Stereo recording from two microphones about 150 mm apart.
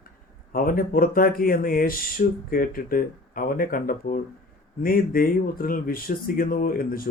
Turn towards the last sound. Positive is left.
turn(degrees=75)  # may be behind; listen again after turning